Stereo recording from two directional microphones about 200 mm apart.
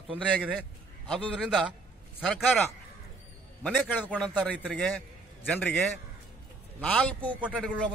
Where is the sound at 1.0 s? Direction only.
Centre (ahead or behind).